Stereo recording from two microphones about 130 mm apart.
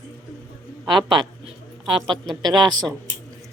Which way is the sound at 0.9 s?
35° right (ahead or behind).